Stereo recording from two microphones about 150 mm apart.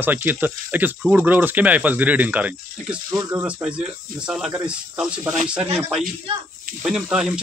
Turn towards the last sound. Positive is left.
turn(degrees=-5)  # may be behind; listen again after turning